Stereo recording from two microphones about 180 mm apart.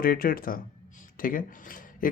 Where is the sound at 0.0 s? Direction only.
55° left (ahead or behind).